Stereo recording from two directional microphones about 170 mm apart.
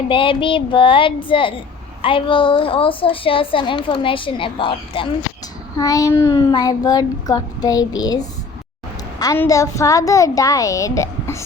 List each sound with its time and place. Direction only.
0.1 s a child's voice: 30° left (ahead or behind)